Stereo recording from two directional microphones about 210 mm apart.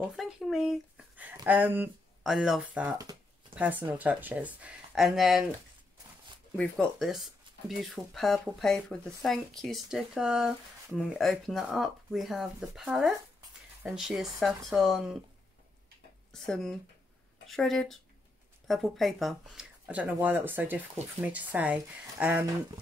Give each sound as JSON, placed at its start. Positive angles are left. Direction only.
{"t": 0.0, "sound": "speech", "side_deg": 0}
{"t": 3.0, "sound": "a sound", "side_deg": -15}
{"t": 3.5, "sound": "speech", "side_deg": -5}
{"t": 6.5, "sound": "speech", "side_deg": 5}
{"t": 16.3, "sound": "speech", "side_deg": 5}